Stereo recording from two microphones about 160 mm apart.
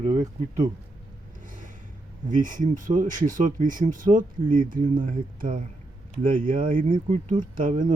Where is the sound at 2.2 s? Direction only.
55° right (ahead or behind).